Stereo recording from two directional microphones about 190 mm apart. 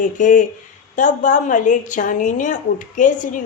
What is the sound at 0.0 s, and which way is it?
A woman's voice, 45° left (ahead or behind).